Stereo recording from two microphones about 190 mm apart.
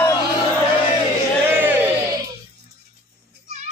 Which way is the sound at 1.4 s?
10° right (ahead or behind).